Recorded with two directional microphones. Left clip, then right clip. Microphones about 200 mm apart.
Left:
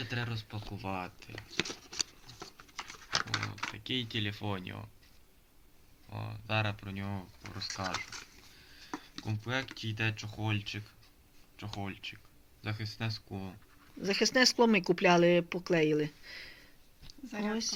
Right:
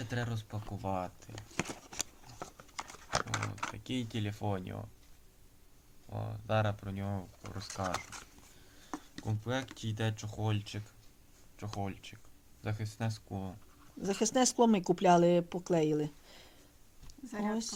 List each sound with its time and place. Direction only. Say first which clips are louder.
0.0 s speech: left 1 dB; 55° right (ahead or behind)
3.2 s speech: left 1 dB; 55° right (ahead or behind)
6.1 s speech: right 1 dB; 50° right (ahead or behind)
14.0 s speech: left 3 dB; 15° right (ahead or behind)
17.1 s speech: left 1 dB; 15° left (ahead or behind)